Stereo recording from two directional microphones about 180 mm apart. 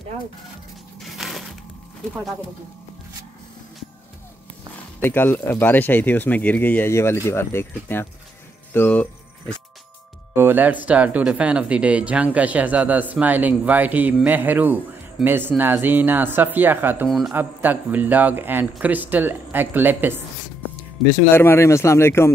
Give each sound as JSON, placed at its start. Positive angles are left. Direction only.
{"t": 1.0, "sound": "crushing", "side_deg": 0}
{"t": 5.0, "sound": "speech", "side_deg": 10}
{"t": 10.3, "sound": "speech", "side_deg": -10}
{"t": 21.4, "sound": "speech", "side_deg": 15}